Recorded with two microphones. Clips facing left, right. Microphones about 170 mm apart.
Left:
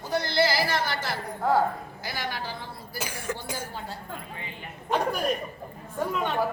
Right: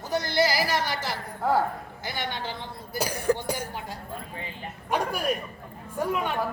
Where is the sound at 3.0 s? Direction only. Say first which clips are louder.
Right 9 dB; 35° right (ahead or behind).